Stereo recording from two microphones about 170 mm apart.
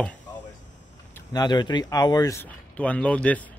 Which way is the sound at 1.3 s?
25° left (ahead or behind).